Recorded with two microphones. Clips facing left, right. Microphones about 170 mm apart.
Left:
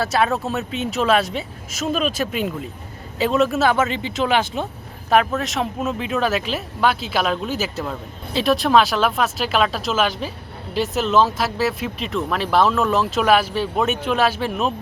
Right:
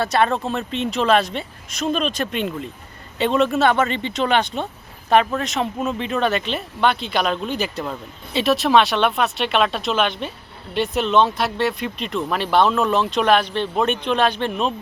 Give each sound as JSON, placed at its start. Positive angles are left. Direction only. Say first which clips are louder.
{"t": 0.0, "sound": "speech", "louder": "right 1 dB", "side_deg": 5}